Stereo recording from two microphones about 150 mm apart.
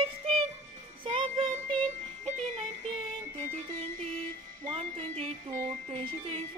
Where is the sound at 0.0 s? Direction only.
40° right (ahead or behind).